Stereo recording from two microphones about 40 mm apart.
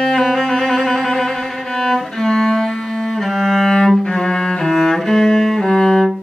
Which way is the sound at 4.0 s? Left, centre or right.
Centre.